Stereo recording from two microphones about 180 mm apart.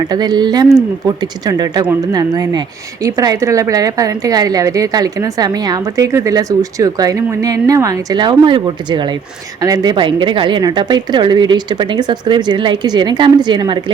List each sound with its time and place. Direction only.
0.1 s speech: 25° right (ahead or behind)